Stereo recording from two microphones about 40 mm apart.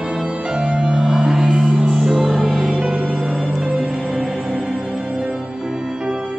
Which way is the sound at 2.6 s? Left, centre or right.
Centre.